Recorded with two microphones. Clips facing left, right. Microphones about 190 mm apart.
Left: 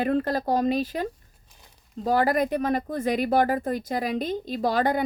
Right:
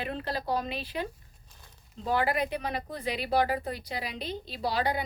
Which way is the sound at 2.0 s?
40° left (ahead or behind).